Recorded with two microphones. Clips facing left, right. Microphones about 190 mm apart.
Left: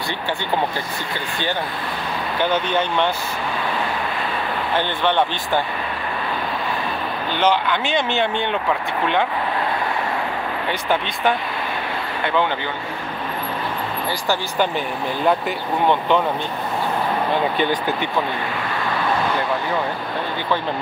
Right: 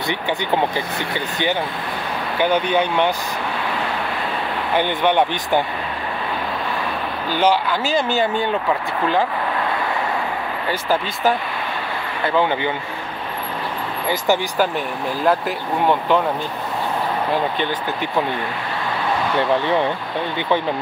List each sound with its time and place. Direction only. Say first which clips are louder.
2.3 s speech: right 3 dB; 10° right (ahead or behind)
4.7 s speech: right 3 dB; 15° right (ahead or behind)
7.3 s speech: right 1 dB; 5° right (ahead or behind)
10.7 s speech: right 2 dB; 5° right (ahead or behind)
15.2 s speech: right 1 dB; centre (ahead or behind)